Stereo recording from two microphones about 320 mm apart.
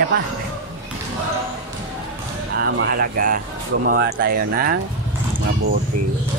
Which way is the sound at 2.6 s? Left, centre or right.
Right.